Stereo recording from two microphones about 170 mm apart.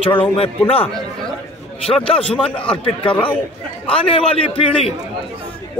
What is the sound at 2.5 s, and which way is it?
Speech, 5° left (ahead or behind).